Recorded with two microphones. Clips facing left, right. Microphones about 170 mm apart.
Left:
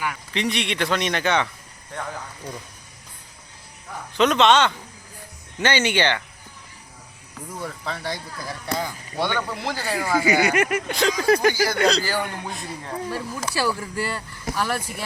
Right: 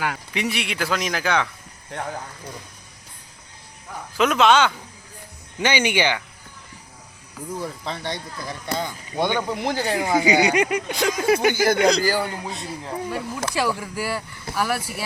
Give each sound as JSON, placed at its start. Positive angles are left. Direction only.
{"t": 0.3, "sound": "a man's voice", "side_deg": -5}
{"t": 4.2, "sound": "a man's voice", "side_deg": 0}
{"t": 5.5, "sound": "speech", "side_deg": -15}
{"t": 7.4, "sound": "speech", "side_deg": -5}
{"t": 7.9, "sound": "speech", "side_deg": -25}
{"t": 8.1, "sound": "a man's voice", "side_deg": 0}
{"t": 9.1, "sound": "speech", "side_deg": -15}
{"t": 11.3, "sound": "speech", "side_deg": -20}
{"t": 12.3, "sound": "a man's voice", "side_deg": -5}
{"t": 13.1, "sound": "speech", "side_deg": -15}